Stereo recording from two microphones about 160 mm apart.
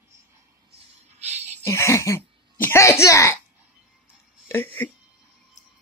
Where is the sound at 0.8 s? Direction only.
45° right (ahead or behind).